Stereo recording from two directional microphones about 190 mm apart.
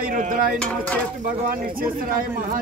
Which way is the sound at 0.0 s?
45° right (ahead or behind).